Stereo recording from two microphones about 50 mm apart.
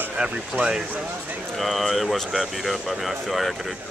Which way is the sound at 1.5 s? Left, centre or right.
Centre.